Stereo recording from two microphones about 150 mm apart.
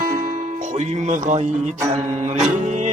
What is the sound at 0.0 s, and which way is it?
Music, 60° right (ahead or behind).